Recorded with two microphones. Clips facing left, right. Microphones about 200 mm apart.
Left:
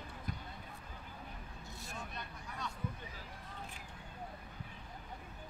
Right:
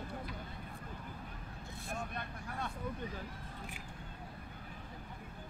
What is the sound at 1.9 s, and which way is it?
Vehicle, 55° right (ahead or behind).